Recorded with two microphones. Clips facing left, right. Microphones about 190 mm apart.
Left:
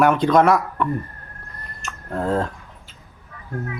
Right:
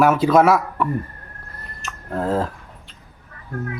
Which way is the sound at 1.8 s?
Centre (ahead or behind).